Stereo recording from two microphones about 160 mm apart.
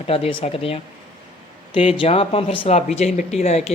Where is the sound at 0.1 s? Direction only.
35° left (ahead or behind).